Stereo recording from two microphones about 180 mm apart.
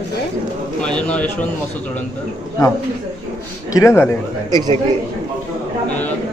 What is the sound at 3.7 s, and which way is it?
Speech, 15° left (ahead or behind).